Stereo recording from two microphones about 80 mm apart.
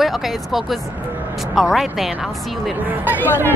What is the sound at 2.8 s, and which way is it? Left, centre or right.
Speech, right.